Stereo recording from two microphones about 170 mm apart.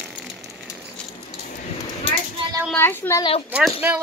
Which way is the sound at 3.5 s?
10° right (ahead or behind).